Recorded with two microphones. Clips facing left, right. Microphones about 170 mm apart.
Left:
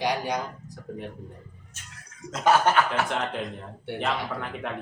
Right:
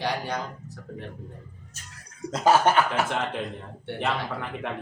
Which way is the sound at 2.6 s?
10° right (ahead or behind).